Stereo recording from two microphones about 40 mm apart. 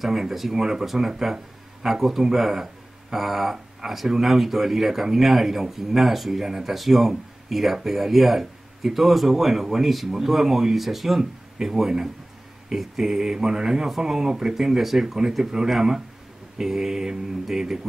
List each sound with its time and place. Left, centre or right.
0.0 s speech: centre